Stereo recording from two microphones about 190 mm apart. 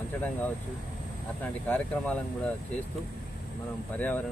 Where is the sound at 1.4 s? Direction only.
5° left (ahead or behind).